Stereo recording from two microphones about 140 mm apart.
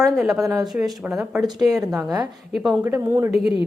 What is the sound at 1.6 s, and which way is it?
Speech, 25° right (ahead or behind).